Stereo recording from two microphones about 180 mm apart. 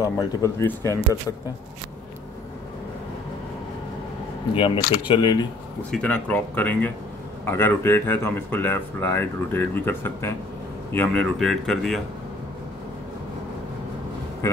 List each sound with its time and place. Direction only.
0.0 s speech: 15° left (ahead or behind)
4.6 s speech: 30° left (ahead or behind)
5.9 s speech: 5° left (ahead or behind)